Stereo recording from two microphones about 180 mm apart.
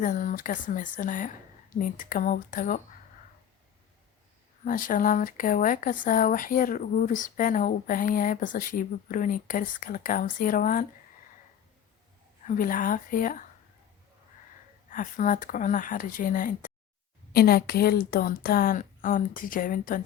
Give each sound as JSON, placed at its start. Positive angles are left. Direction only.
{"t": 0.0, "sound": "speech", "side_deg": 45}
{"t": 4.6, "sound": "speech", "side_deg": 50}
{"t": 12.5, "sound": "speech", "side_deg": 50}
{"t": 14.8, "sound": "speech", "side_deg": 45}